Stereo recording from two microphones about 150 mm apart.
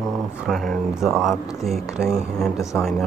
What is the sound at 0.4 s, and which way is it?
Speech, centre (ahead or behind).